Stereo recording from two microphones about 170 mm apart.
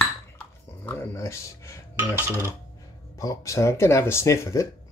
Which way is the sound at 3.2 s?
20° left (ahead or behind).